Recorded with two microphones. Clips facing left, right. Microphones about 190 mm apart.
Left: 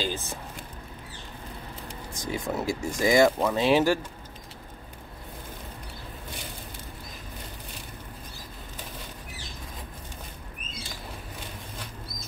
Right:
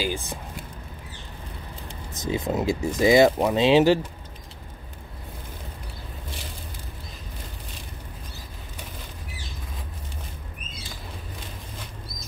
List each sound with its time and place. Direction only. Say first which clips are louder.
0.0 s speech: right 3 dB; 15° right (ahead or behind)
1.9 s speech: right 5 dB; 20° right (ahead or behind)